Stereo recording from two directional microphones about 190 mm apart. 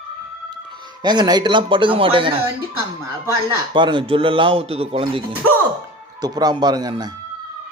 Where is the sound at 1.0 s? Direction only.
25° right (ahead or behind).